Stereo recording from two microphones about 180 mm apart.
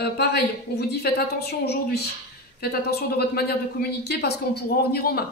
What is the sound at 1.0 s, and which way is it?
Speech, 60° left (ahead or behind).